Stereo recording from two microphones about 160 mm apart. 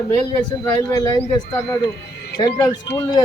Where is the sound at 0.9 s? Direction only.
20° left (ahead or behind).